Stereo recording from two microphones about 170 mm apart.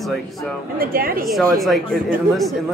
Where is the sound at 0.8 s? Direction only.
60° right (ahead or behind).